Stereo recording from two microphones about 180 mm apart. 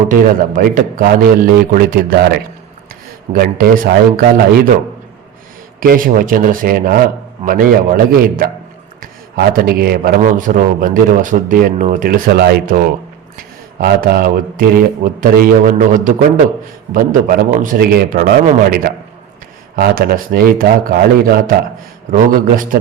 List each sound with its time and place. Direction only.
0.1 s a man's voice: 50° right (ahead or behind)
5.8 s a man's voice: 50° right (ahead or behind)
9.5 s a man's voice: 55° right (ahead or behind)
13.8 s a man's voice: 55° right (ahead or behind)